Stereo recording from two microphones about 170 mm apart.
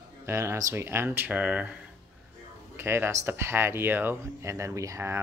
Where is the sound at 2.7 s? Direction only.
15° right (ahead or behind).